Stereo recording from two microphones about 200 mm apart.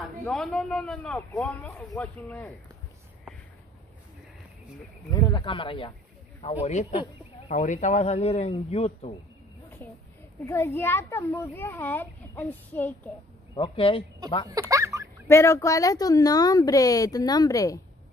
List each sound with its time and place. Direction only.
0.2 s a man's voice: 5° left (ahead or behind)
5.1 s speech: 20° left (ahead or behind)
7.0 s a sound: 25° left (ahead or behind)
7.5 s speech: 40° left (ahead or behind)
10.4 s a child's voice: 10° left (ahead or behind)
13.6 s speech: 25° left (ahead or behind)
14.5 s a sound: 15° right (ahead or behind)
15.2 s a child's voice: 15° left (ahead or behind)